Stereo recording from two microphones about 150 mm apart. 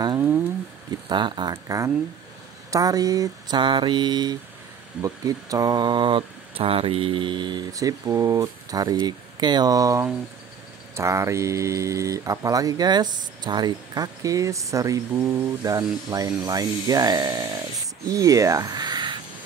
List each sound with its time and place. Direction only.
1.0 s speech: 30° right (ahead or behind)